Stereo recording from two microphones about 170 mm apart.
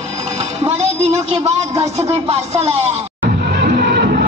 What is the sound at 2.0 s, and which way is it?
Speech, 40° right (ahead or behind).